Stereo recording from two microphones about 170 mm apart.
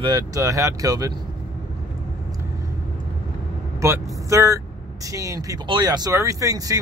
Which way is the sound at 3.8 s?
15° right (ahead or behind).